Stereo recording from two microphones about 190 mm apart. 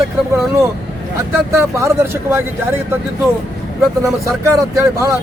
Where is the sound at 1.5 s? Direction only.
15° right (ahead or behind).